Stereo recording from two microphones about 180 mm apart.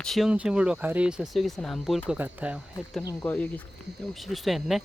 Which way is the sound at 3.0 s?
15° left (ahead or behind).